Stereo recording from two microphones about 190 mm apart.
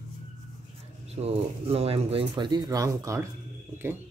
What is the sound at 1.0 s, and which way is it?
Speech, 30° right (ahead or behind).